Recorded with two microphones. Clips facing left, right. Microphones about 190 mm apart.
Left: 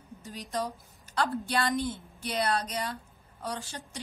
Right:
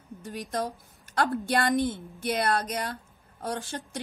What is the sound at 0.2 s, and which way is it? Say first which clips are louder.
Speech: right 2 dB; 55° right (ahead or behind).